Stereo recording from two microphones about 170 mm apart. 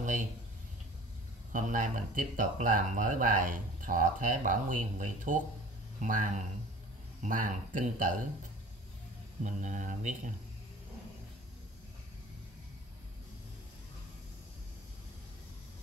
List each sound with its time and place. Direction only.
1.5 s speech: 50° right (ahead or behind)
9.4 s speech: 50° right (ahead or behind)